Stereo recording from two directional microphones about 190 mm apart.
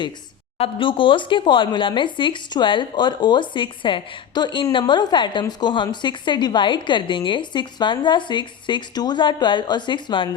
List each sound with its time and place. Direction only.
0.6 s speech: 25° left (ahead or behind)